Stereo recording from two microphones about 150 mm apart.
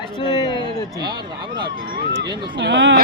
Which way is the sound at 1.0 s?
30° right (ahead or behind).